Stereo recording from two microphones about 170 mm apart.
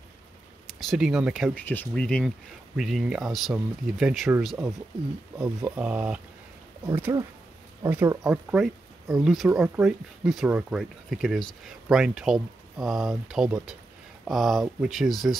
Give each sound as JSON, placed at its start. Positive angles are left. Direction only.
{"t": 0.7, "sound": "speech", "side_deg": 0}
{"t": 1.5, "sound": "speech", "side_deg": 10}
{"t": 8.2, "sound": "speech", "side_deg": -5}